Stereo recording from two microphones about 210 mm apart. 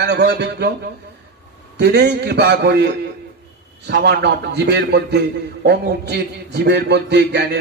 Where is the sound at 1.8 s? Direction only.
50° right (ahead or behind).